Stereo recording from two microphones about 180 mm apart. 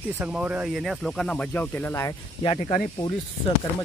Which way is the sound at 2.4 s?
30° left (ahead or behind).